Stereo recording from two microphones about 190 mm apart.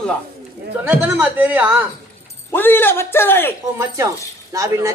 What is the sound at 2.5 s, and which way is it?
A man's voice, 10° left (ahead or behind).